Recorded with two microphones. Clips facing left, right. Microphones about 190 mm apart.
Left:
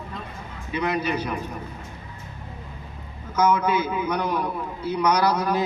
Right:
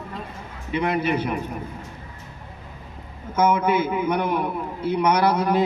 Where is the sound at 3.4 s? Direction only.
25° right (ahead or behind).